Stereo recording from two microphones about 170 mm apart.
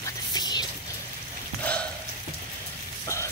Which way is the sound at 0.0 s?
25° left (ahead or behind).